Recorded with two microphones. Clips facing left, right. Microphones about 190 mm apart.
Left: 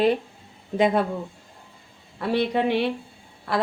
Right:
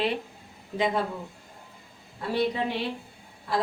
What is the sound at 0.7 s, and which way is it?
Speech, 55° left (ahead or behind).